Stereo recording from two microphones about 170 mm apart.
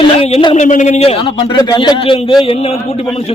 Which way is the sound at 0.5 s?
45° left (ahead or behind).